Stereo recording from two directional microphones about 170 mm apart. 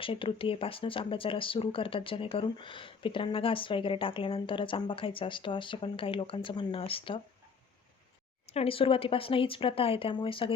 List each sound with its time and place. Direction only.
0.0 s speech: 30° left (ahead or behind)
8.4 s speech: 35° left (ahead or behind)